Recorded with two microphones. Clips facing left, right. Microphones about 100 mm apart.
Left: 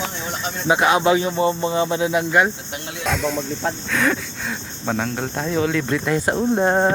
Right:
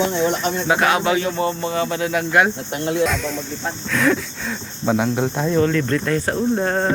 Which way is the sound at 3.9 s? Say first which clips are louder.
Right 5 dB; centre (ahead or behind).